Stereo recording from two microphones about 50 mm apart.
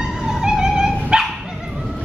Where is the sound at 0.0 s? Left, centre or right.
Centre.